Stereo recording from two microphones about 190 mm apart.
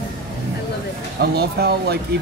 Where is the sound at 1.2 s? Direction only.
60° right (ahead or behind).